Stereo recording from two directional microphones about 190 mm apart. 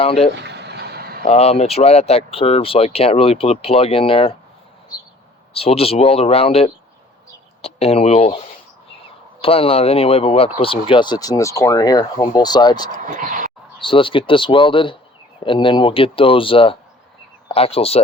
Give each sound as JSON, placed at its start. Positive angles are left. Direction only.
{"t": 0.0, "sound": "speech", "side_deg": 30}
{"t": 0.4, "sound": "vehicle", "side_deg": -60}
{"t": 1.2, "sound": "speech", "side_deg": 35}
{"t": 5.5, "sound": "speech", "side_deg": 30}
{"t": 9.4, "sound": "speech", "side_deg": 30}
{"t": 13.1, "sound": "a sound", "side_deg": -45}
{"t": 13.7, "sound": "speech", "side_deg": 25}